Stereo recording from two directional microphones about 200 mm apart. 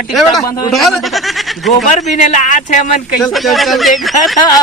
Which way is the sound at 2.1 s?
35° left (ahead or behind).